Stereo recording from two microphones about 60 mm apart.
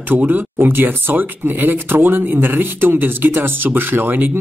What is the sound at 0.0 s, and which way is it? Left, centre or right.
Speech, right.